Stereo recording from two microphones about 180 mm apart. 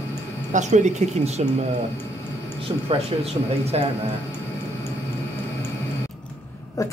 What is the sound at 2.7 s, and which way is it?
Speech, 30° right (ahead or behind).